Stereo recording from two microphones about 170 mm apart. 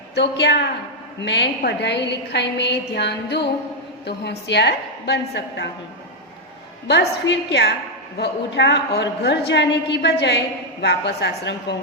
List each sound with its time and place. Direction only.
0.1 s a woman's voice: 85° left
6.8 s a woman's voice: 85° left